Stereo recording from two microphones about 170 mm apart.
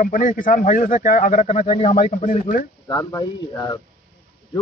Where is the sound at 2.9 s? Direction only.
20° left (ahead or behind).